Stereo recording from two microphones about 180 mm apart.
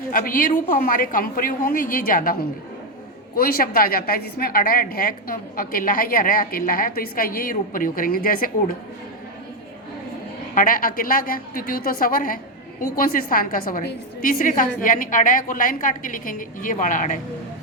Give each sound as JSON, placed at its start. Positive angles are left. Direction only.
{"t": 0.1, "sound": "a woman's voice", "side_deg": 50}
{"t": 3.3, "sound": "a woman's voice", "side_deg": 55}
{"t": 10.5, "sound": "a woman's voice", "side_deg": 50}